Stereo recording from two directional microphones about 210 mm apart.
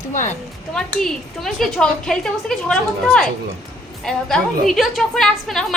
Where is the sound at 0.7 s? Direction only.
Centre (ahead or behind).